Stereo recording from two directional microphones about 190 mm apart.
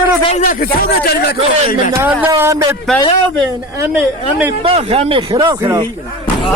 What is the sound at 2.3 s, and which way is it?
Speech, 15° right (ahead or behind).